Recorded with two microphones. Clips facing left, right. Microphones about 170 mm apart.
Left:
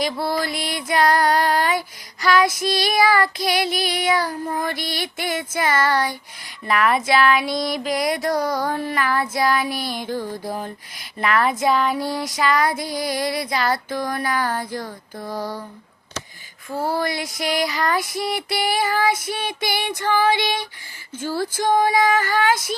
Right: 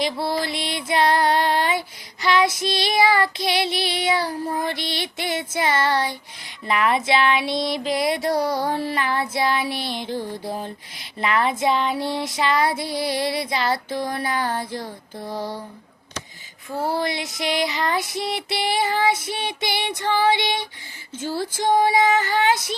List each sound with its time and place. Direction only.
0.0 s female singing: 25° right (ahead or behind)
2.2 s child singing: 25° right (ahead or behind)
2.6 s female singing: 25° right (ahead or behind)
17.0 s female singing: 25° right (ahead or behind)